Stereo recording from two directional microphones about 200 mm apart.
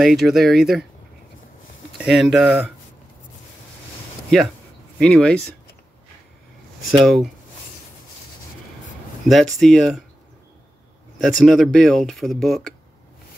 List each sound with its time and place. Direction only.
0.0 s speech: centre (ahead or behind)
2.0 s speech: centre (ahead or behind)
4.9 s speech: 5° left (ahead or behind)
6.9 s speech: centre (ahead or behind)
9.3 s speech: centre (ahead or behind)
11.1 s speech: centre (ahead or behind)